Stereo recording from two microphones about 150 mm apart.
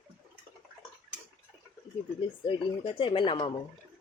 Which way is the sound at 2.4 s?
35° left (ahead or behind).